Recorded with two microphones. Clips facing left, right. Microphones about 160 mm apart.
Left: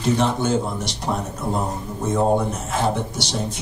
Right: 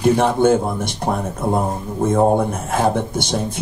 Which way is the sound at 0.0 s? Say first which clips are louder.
Right 6 dB; 55° right (ahead or behind).